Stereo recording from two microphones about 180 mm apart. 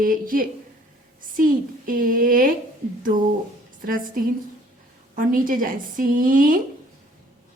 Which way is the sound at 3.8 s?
50° right (ahead or behind).